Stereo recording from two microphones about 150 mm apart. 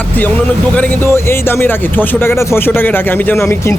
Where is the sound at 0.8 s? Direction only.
15° left (ahead or behind).